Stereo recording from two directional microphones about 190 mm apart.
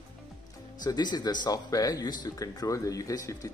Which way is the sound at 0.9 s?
20° left (ahead or behind).